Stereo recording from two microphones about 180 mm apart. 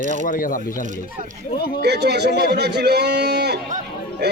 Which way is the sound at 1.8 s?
65° right (ahead or behind).